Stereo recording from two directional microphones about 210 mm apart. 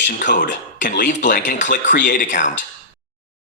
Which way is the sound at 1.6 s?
55° left (ahead or behind).